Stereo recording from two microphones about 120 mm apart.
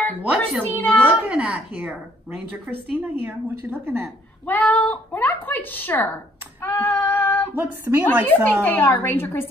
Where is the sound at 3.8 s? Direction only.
20° right (ahead or behind).